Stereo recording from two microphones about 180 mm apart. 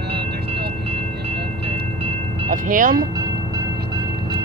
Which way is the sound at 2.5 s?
50° right (ahead or behind).